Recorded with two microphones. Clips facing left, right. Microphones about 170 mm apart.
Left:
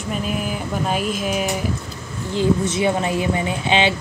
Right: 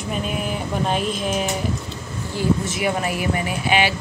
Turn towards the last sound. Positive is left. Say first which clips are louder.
# left 1 dB
turn(degrees=25)  # may be behind; listen again after turning